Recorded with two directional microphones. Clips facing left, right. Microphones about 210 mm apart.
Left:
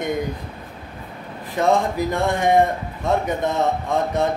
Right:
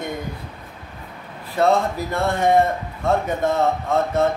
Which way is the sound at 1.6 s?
15° left (ahead or behind).